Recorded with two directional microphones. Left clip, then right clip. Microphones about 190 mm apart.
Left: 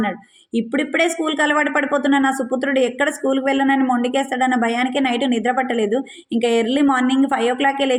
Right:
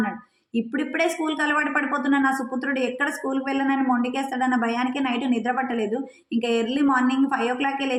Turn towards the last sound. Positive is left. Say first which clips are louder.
# left 7 dB
turn(degrees=25)  # may be behind; listen again after turning